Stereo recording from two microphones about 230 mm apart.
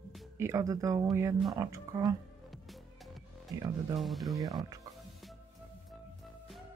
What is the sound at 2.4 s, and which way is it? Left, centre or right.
Music, centre.